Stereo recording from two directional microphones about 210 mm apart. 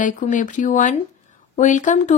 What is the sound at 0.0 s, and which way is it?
Speech, 35° left (ahead or behind).